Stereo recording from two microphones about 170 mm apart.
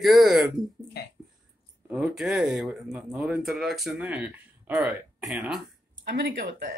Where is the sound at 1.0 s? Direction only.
75° left (ahead or behind).